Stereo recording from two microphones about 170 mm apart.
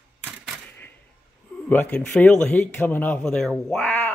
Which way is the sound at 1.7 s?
10° left (ahead or behind).